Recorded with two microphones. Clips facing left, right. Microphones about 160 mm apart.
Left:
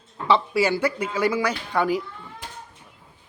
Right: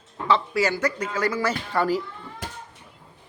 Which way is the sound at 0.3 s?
20° left (ahead or behind).